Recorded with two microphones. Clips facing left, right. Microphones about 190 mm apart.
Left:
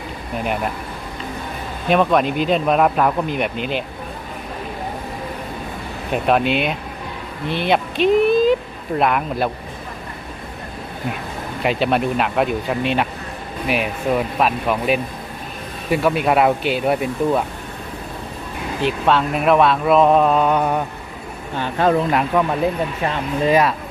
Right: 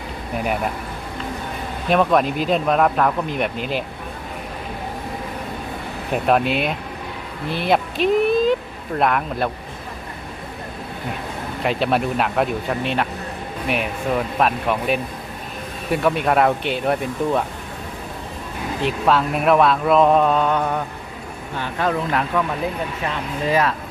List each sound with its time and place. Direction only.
1.9 s speech: centre (ahead or behind)
6.2 s speech: centre (ahead or behind)
11.6 s speech: centre (ahead or behind)
18.8 s speech: centre (ahead or behind)
21.6 s speech: 30° left (ahead or behind)
22.3 s speech: 15° left (ahead or behind)